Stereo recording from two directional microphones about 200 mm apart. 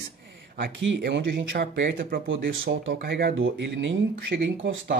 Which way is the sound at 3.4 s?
65° right (ahead or behind).